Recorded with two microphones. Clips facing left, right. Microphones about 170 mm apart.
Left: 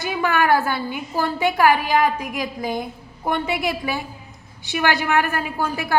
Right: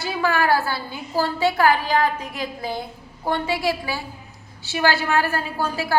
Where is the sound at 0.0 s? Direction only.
20° left (ahead or behind).